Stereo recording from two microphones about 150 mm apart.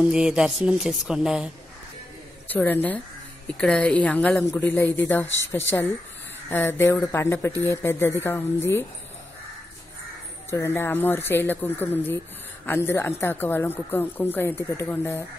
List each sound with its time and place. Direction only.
0.0 s speech: 5° right (ahead or behind)
2.4 s speech: 10° left (ahead or behind)
10.5 s speech: 15° left (ahead or behind)